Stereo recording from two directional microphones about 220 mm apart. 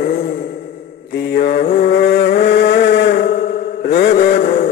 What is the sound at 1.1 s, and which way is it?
Mantra, 45° left (ahead or behind).